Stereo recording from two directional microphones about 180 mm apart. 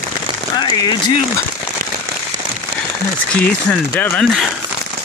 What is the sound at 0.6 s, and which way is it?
Speech, 25° left (ahead or behind).